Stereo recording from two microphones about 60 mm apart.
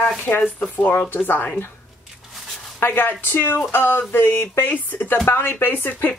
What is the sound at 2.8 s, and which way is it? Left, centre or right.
Speech, left.